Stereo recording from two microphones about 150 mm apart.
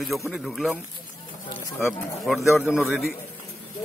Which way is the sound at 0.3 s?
Centre (ahead or behind).